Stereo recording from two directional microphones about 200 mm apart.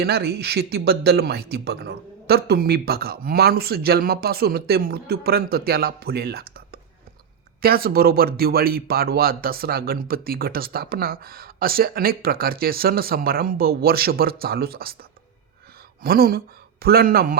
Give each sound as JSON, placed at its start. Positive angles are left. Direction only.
{"t": 0.0, "sound": "speech", "side_deg": -50}
{"t": 16.0, "sound": "speech", "side_deg": -50}